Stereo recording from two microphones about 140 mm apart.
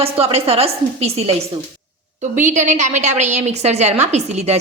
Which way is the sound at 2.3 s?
65° right (ahead or behind).